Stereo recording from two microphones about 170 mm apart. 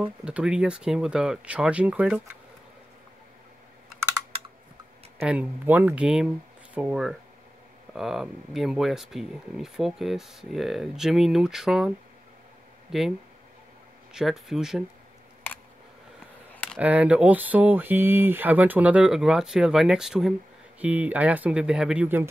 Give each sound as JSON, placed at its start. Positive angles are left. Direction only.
{"t": 0.0, "sound": "speech", "side_deg": -5}
{"t": 5.2, "sound": "speech", "side_deg": -10}
{"t": 12.9, "sound": "speech", "side_deg": -5}
{"t": 14.1, "sound": "speech", "side_deg": 0}
{"t": 16.7, "sound": "speech", "side_deg": -10}